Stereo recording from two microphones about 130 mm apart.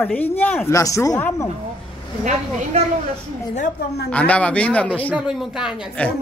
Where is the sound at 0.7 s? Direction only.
25° left (ahead or behind).